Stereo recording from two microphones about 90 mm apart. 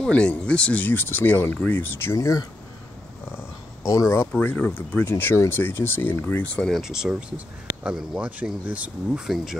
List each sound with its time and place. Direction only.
0.0 s speech: 10° left (ahead or behind)
2.1 s speech: 40° left (ahead or behind)
3.8 s speech: 35° left (ahead or behind)
4.4 s speech: 20° left (ahead or behind)
6.7 s speech: 5° right (ahead or behind)
9.2 s speech: 5° right (ahead or behind)